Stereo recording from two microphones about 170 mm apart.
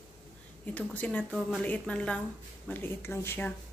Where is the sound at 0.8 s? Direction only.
10° left (ahead or behind).